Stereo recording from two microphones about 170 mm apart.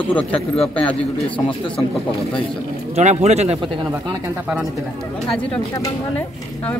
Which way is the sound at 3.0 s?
40° right (ahead or behind).